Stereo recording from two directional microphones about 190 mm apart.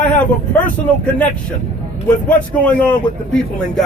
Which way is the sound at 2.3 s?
5° left (ahead or behind).